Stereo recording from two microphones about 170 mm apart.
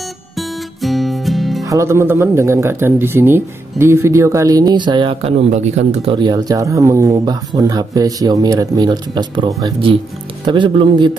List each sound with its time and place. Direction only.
0.8 s music: centre (ahead or behind)
1.7 s speech: 15° right (ahead or behind); by 6.1 s 40° right (ahead or behind)
6.1 s speech: 25° right (ahead or behind)